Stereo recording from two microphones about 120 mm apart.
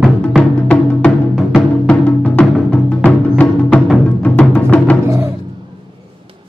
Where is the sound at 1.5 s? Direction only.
10° left (ahead or behind).